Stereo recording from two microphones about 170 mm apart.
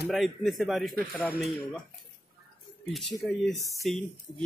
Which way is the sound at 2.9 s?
Centre (ahead or behind).